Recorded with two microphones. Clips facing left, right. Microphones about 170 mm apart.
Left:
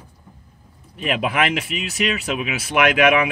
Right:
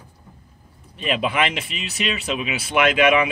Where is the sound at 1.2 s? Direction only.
5° left (ahead or behind).